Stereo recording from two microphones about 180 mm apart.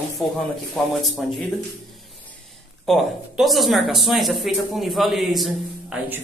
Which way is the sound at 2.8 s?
Centre (ahead or behind).